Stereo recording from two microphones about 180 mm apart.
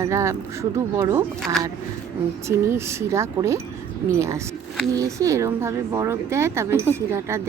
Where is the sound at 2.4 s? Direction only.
15° right (ahead or behind).